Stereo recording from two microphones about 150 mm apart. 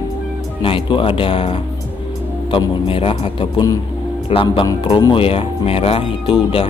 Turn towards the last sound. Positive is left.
turn(degrees=35)  # may be behind; listen again after turning